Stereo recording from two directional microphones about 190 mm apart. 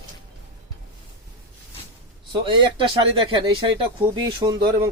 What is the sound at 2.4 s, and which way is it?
Speech, 25° right (ahead or behind).